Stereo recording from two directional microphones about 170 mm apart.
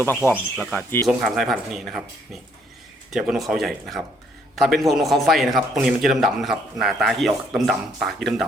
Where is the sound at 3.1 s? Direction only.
5° right (ahead or behind).